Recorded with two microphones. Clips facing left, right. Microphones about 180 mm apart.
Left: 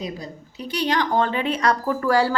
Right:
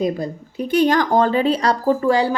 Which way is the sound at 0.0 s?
50° right (ahead or behind).